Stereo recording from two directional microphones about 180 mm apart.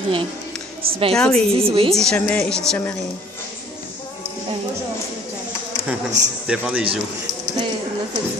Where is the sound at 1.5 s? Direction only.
30° right (ahead or behind).